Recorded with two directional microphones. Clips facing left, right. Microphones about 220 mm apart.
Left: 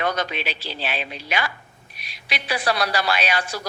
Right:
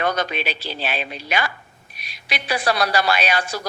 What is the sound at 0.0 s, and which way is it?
A woman's voice, 45° right (ahead or behind).